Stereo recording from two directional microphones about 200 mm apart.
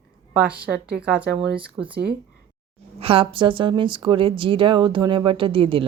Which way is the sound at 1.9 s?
55° right (ahead or behind).